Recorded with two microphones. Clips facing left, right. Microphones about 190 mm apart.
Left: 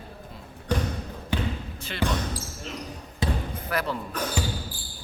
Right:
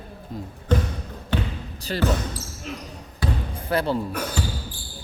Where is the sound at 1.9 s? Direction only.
40° right (ahead or behind).